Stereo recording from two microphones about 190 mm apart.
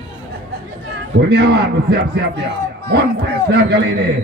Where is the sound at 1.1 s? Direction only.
65° right (ahead or behind).